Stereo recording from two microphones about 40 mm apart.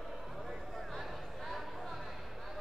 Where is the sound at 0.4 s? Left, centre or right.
Centre.